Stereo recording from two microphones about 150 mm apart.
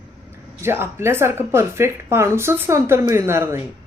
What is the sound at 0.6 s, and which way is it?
Speech, 15° right (ahead or behind).